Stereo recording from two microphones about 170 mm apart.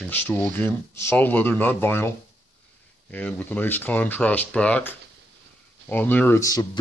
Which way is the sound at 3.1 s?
10° left (ahead or behind).